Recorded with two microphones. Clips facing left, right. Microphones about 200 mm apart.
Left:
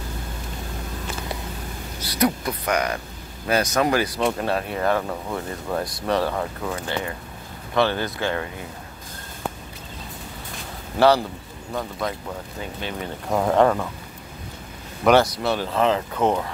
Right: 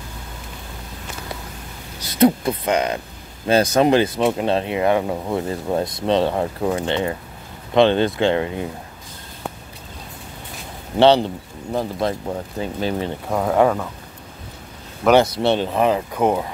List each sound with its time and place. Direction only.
2.0 s speech: 25° right (ahead or behind)
11.0 s speech: 25° right (ahead or behind)
13.3 s speech: centre (ahead or behind)
15.2 s speech: 25° right (ahead or behind)